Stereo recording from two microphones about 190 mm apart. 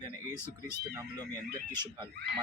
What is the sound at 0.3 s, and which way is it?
Speech, 15° left (ahead or behind).